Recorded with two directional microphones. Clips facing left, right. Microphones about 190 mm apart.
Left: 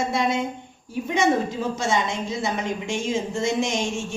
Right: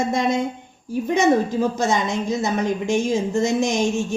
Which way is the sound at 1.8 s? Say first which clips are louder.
Right 3 dB; 40° right (ahead or behind).